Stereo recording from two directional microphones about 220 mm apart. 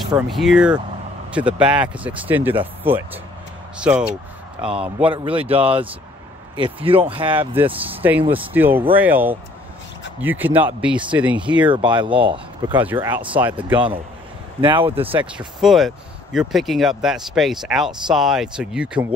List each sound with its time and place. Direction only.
0.3 s speech: centre (ahead or behind)
5.1 s speech: 25° right (ahead or behind)
8.3 s speech: 10° right (ahead or behind)
11.6 s speech: 20° right (ahead or behind)
12.7 s speech: 10° right (ahead or behind)
13.7 s speech: 25° right (ahead or behind)
15.3 s speech: centre (ahead or behind)